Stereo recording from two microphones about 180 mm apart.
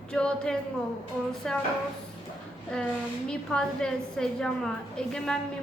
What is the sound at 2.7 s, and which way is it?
A woman's voice, 5° left (ahead or behind).